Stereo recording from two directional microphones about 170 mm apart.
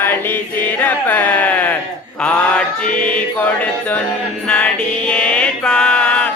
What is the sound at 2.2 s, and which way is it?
Mantra, 5° left (ahead or behind).